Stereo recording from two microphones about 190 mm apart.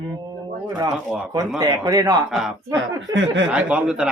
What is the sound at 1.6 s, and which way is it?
Speech, 20° right (ahead or behind).